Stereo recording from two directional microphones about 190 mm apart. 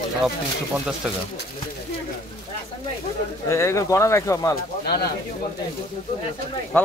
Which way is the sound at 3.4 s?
15° left (ahead or behind).